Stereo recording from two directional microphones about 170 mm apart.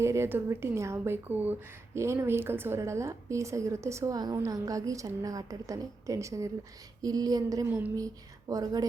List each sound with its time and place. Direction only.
0.0 s a woman's voice: 15° right (ahead or behind)